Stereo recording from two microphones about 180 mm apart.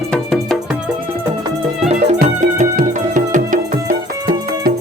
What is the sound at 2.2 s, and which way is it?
Music, 50° right (ahead or behind).